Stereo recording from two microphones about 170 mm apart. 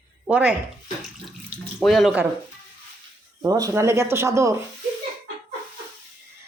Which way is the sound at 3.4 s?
20° right (ahead or behind).